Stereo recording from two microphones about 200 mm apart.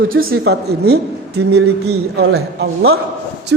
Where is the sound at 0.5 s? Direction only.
55° right (ahead or behind).